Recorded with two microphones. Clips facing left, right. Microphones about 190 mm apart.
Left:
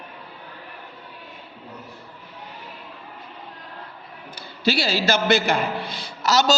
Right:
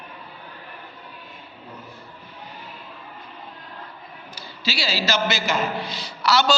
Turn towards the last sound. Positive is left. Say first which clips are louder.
# left 1 dB
turn(degrees=40)  # may be behind; listen again after turning